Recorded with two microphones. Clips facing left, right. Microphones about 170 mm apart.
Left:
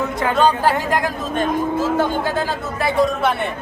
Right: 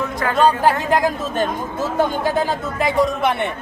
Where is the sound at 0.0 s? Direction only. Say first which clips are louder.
Left 1 dB; 20° left (ahead or behind).